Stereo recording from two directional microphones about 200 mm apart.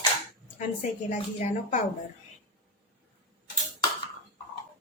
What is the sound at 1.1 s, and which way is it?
Speech, 40° left (ahead or behind).